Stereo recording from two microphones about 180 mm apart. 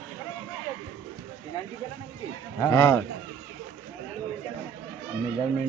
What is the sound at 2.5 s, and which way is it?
Speech, 15° left (ahead or behind).